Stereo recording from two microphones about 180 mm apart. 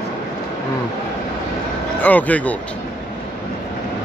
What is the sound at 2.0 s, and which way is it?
Speech, 10° left (ahead or behind).